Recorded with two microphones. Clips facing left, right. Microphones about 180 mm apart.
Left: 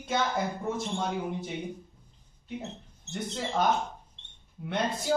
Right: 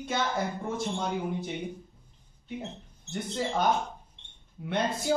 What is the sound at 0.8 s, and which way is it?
Speech, centre (ahead or behind).